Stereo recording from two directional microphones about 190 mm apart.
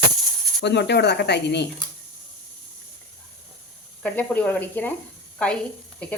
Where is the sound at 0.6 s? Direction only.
60° left (ahead or behind).